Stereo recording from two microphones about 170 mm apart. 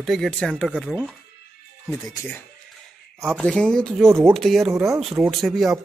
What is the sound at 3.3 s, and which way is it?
Speech, 5° left (ahead or behind).